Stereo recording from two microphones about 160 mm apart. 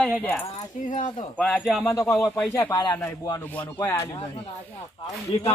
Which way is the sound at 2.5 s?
20° left (ahead or behind).